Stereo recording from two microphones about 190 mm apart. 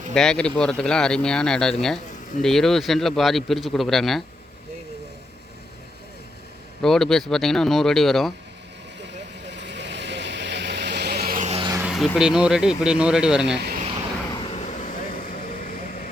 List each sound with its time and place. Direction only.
0.1 s speech: 5° left (ahead or behind)
6.8 s speech: centre (ahead or behind)
9.6 s vehicle: 65° right (ahead or behind); by 11.6 s 40° right (ahead or behind)
11.8 s speech: centre (ahead or behind)
14.3 s vehicle: 30° left (ahead or behind)